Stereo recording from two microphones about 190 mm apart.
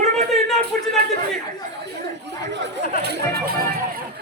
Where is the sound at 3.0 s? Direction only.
55° right (ahead or behind).